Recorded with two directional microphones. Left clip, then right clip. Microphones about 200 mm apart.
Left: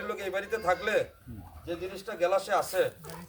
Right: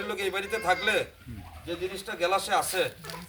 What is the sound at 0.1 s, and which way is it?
Speech, centre (ahead or behind).